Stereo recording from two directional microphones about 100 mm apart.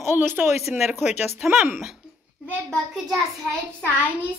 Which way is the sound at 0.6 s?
Centre (ahead or behind).